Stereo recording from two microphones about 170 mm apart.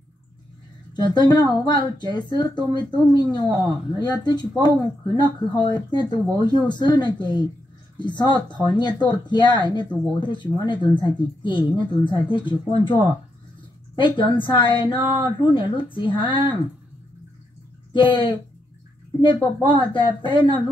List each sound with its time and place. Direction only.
0.9 s speech: 25° left (ahead or behind)
17.9 s speech: 30° left (ahead or behind)